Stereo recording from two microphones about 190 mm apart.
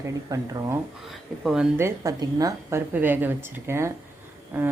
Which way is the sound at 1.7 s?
15° right (ahead or behind).